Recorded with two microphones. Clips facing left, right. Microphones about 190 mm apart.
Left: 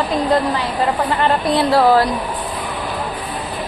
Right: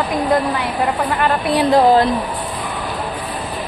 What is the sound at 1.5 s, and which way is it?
Speech, 20° right (ahead or behind).